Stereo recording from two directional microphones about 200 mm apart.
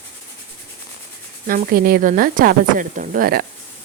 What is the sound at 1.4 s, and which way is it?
A woman's voice, 45° right (ahead or behind).